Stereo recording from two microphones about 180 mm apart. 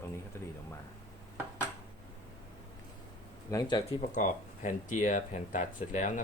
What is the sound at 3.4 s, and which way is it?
Speech, 20° left (ahead or behind).